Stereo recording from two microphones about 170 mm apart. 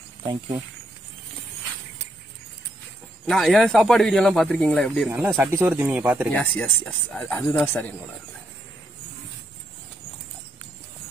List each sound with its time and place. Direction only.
0.2 s speech: 30° right (ahead or behind)
3.3 s speech: centre (ahead or behind)
5.1 s speech: 10° right (ahead or behind)
6.3 s speech: 10° left (ahead or behind)